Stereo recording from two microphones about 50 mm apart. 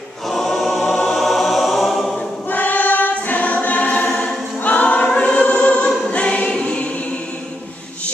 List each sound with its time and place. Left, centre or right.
0.3 s choir: centre
2.5 s choir: left